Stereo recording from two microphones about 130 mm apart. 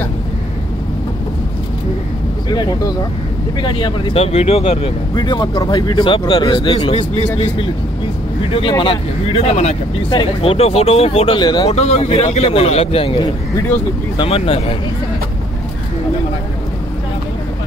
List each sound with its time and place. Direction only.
2.5 s speech: 30° left (ahead or behind); by 4.9 s 50° left (ahead or behind)
5.1 s speech: 35° left (ahead or behind)
7.0 s speech: 50° left (ahead or behind)
11.3 s speech: 35° left (ahead or behind)
11.7 s speech: 55° left (ahead or behind)